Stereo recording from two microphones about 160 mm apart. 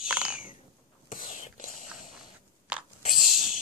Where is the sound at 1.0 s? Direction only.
55° left (ahead or behind).